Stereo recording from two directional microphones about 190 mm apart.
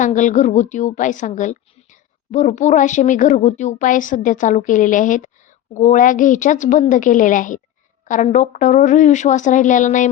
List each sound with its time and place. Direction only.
0.0 s a woman's voice: 40° left (ahead or behind)